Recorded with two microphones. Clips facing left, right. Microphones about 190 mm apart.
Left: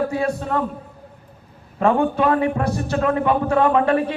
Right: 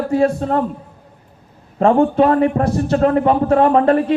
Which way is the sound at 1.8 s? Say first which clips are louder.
Right 5 dB; 30° right (ahead or behind).